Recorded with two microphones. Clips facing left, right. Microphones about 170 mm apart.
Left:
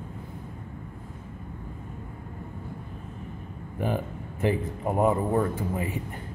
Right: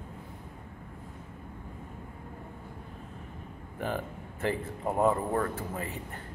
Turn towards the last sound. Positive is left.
turn(degrees=15)  # may be behind; listen again after turning